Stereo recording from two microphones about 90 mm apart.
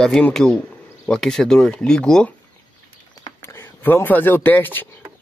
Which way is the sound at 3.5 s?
25° left (ahead or behind).